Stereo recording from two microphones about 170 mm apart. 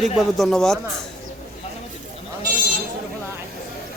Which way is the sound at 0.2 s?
Centre (ahead or behind).